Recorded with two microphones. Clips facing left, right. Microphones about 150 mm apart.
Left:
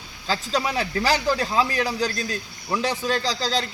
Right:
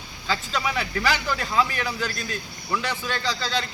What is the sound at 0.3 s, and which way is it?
Speech, 35° left (ahead or behind).